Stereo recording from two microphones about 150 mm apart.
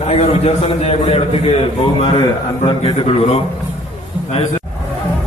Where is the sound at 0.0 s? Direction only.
45° left (ahead or behind).